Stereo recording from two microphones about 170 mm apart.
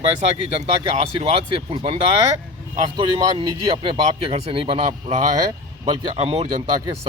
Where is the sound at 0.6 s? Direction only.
35° right (ahead or behind).